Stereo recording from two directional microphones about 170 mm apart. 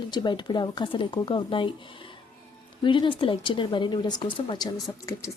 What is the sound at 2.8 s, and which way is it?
A woman's voice, 30° left (ahead or behind).